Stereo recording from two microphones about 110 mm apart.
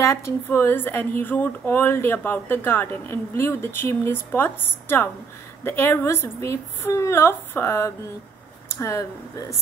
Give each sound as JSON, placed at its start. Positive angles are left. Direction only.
{"t": 0.0, "sound": "speech", "side_deg": 25}